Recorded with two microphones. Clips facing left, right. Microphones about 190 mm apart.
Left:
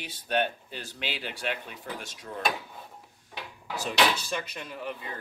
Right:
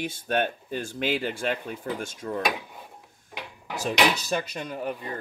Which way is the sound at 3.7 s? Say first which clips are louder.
Right 2 dB; 15° right (ahead or behind).